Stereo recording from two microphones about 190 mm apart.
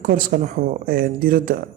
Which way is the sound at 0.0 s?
50° right (ahead or behind).